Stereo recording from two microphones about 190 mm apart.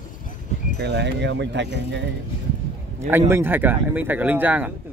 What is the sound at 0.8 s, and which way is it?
Speech, 65° right (ahead or behind).